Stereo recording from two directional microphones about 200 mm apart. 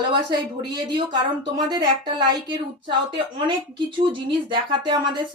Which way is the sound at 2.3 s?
20° right (ahead or behind).